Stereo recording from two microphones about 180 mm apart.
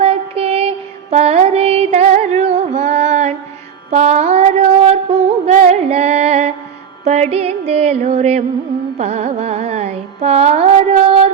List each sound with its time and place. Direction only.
0.0 s child singing: 35° right (ahead or behind)
1.1 s music: 35° right (ahead or behind)
3.9 s a sound: 40° right (ahead or behind)
7.0 s music: 40° right (ahead or behind)
9.0 s carnatic music: 40° right (ahead or behind)